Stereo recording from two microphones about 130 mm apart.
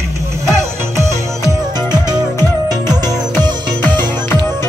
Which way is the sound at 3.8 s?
15° left (ahead or behind).